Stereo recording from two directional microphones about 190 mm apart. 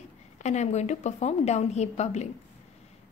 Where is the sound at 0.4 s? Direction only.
35° left (ahead or behind).